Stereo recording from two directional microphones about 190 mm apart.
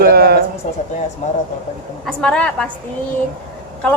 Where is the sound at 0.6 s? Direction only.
40° left (ahead or behind).